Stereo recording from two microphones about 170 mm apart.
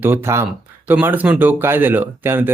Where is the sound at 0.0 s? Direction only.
15° right (ahead or behind).